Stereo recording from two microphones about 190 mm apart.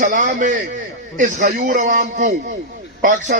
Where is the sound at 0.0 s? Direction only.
40° right (ahead or behind).